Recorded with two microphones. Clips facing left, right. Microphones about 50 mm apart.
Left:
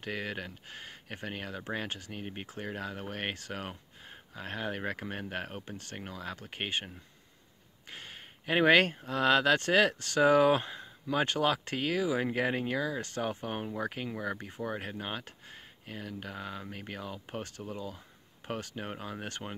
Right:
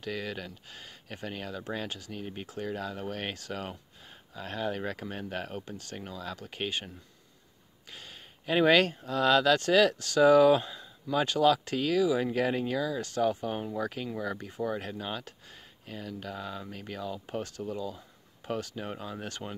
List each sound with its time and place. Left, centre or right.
0.0 s speech: left
7.9 s speech: left
13.7 s speech: centre
15.8 s speech: centre